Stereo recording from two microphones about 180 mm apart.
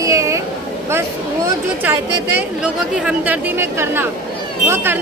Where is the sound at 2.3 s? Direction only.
5° right (ahead or behind).